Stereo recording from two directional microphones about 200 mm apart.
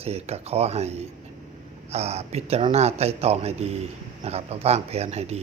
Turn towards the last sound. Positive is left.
turn(degrees=-30)  # may be behind; listen again after turning